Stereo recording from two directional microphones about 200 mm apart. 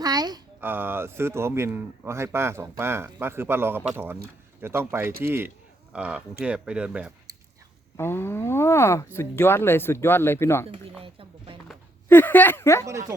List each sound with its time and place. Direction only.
0.0 s speech: 20° right (ahead or behind)
7.9 s speech: 10° left (ahead or behind)
11.0 s speech: 25° right (ahead or behind)
12.0 s speech: 10° left (ahead or behind)